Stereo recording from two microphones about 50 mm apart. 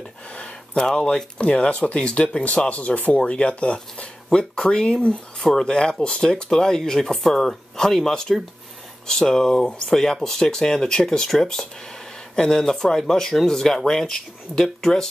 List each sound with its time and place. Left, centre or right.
0.3 s speech: centre